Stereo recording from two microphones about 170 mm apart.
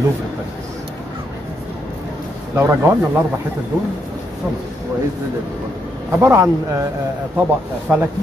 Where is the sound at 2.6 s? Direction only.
15° right (ahead or behind).